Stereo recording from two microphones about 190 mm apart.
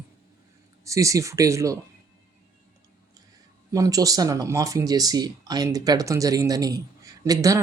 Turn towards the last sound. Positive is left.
turn(degrees=-15)  # may be behind; listen again after turning